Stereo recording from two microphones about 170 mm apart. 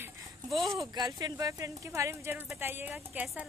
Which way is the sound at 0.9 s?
25° right (ahead or behind).